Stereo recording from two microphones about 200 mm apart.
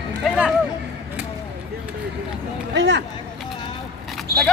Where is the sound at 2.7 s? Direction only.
60° right (ahead or behind).